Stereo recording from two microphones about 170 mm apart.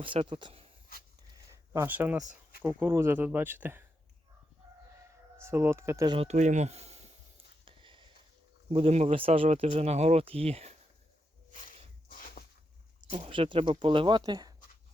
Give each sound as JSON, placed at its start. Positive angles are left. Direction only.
{"t": 0.0, "sound": "speech", "side_deg": -30}
{"t": 1.7, "sound": "speech", "side_deg": -10}
{"t": 5.4, "sound": "speech", "side_deg": -15}
{"t": 6.1, "sound": "speech", "side_deg": -45}
{"t": 7.6, "sound": "a sound", "side_deg": -30}
{"t": 8.7, "sound": "speech", "side_deg": -35}
{"t": 12.0, "sound": "a sound", "side_deg": 55}
{"t": 13.0, "sound": "speech", "side_deg": -30}